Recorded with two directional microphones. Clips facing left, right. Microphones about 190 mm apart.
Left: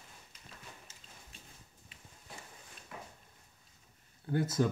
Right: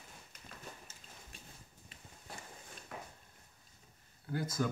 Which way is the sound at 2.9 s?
50° right (ahead or behind).